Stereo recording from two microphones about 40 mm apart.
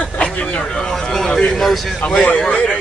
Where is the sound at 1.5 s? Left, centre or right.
Centre.